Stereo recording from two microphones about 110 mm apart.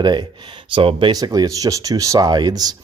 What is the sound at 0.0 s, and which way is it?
Speech, 40° right (ahead or behind).